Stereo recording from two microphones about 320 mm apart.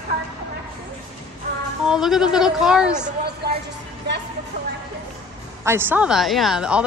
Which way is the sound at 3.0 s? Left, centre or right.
Right.